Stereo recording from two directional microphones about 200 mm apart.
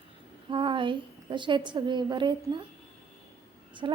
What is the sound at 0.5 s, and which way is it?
A woman's voice, 25° right (ahead or behind).